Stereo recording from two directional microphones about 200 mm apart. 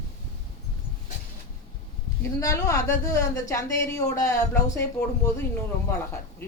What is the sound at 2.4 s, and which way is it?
A woman's voice, 15° left (ahead or behind).